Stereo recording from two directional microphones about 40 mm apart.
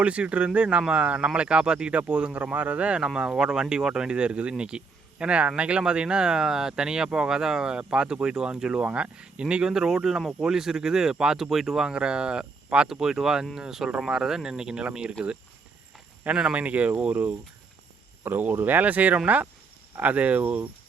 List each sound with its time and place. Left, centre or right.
0.0 s speech: right
3.2 s speech: right
9.6 s speech: centre
11.4 s speech: centre
11.9 s speech: right
12.9 s speech: centre; by 16.6 s right
16.6 s speech: right
18.3 s speech: right
18.6 s speech: right